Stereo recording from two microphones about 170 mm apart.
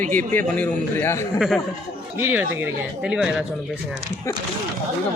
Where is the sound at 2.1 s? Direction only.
10° right (ahead or behind).